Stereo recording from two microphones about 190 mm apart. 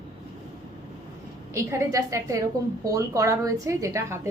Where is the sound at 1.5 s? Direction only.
15° right (ahead or behind).